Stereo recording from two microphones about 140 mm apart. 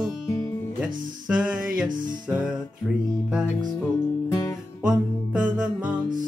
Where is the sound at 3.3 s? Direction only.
5° right (ahead or behind).